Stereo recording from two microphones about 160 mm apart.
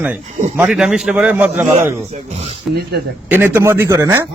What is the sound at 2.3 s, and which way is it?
Speech, 40° right (ahead or behind).